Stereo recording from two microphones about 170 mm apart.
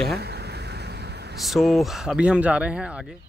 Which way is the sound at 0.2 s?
75° right (ahead or behind).